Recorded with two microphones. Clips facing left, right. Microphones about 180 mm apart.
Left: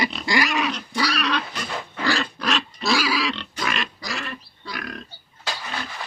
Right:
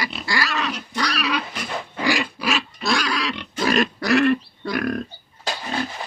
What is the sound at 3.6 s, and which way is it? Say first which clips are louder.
Pig: right 9 dB; 40° right (ahead or behind).